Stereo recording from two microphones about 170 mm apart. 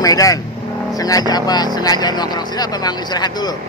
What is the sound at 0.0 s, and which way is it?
Speech, 20° left (ahead or behind).